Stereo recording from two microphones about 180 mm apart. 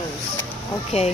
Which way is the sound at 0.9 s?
40° left (ahead or behind).